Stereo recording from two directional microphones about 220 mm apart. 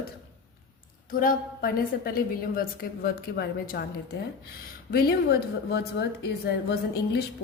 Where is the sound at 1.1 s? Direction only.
40° left (ahead or behind).